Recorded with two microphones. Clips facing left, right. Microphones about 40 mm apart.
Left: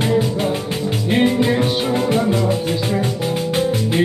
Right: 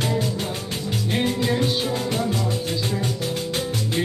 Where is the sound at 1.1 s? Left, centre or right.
Left.